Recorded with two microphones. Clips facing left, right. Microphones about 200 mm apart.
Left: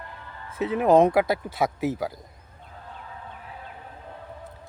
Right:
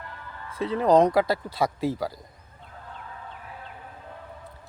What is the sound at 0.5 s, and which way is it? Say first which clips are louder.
Speech: left 1 dB; 20° left (ahead or behind).